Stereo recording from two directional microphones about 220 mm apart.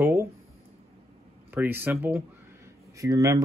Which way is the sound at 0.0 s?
10° right (ahead or behind).